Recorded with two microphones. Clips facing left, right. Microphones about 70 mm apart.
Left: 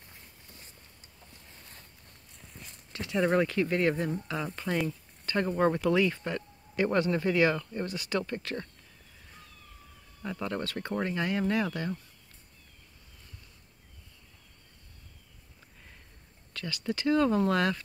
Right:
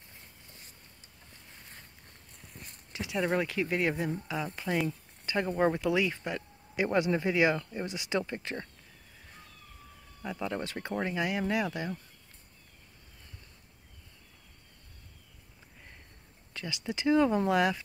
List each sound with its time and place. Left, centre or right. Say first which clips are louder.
2.9 s a sound: left 1 dB; centre
3.2 s speech: left 4 dB; centre
10.2 s speech: left 1 dB; centre
16.5 s speech: left 2 dB; centre